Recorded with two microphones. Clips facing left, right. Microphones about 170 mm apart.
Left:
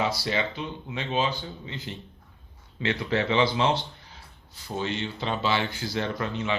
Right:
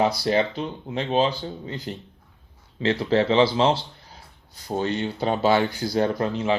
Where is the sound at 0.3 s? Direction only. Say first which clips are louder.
Right 6 dB; 45° right (ahead or behind).